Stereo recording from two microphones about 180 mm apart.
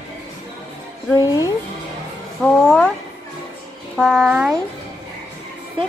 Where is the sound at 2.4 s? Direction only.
5° left (ahead or behind).